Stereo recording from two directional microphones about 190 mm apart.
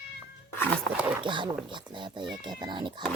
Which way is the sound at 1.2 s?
25° right (ahead or behind).